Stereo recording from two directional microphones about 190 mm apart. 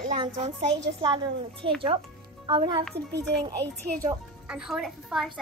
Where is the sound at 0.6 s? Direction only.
25° right (ahead or behind).